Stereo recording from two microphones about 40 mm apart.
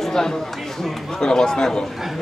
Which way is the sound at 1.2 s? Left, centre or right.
Centre.